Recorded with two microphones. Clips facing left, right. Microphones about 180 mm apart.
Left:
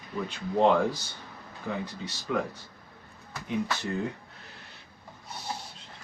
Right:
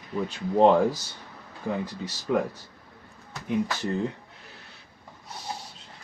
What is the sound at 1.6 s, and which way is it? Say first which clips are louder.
Speech: right 4 dB; 30° right (ahead or behind).